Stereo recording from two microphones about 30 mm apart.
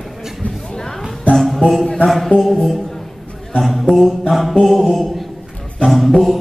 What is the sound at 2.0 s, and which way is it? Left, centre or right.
Chant, centre.